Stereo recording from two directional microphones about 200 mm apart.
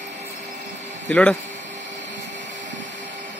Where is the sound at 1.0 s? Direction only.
5° left (ahead or behind).